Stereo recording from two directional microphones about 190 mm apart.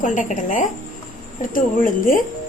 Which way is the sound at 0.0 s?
40° left (ahead or behind).